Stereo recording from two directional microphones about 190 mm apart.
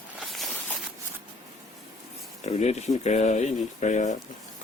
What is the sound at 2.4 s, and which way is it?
Speech, 35° left (ahead or behind).